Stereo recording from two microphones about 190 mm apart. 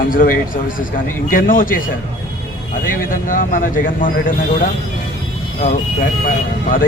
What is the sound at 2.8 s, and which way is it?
A man's voice, 45° left (ahead or behind).